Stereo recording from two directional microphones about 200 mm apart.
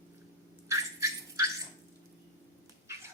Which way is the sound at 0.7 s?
15° right (ahead or behind).